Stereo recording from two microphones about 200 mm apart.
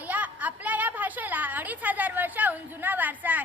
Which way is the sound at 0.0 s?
10° right (ahead or behind).